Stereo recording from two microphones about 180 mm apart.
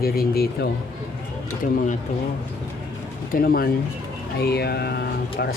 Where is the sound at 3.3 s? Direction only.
55° left (ahead or behind).